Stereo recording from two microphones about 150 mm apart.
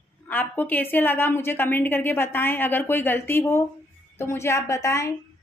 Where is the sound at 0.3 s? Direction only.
10° left (ahead or behind).